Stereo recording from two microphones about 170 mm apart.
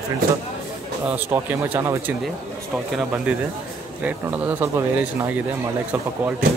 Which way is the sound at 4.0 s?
10° right (ahead or behind).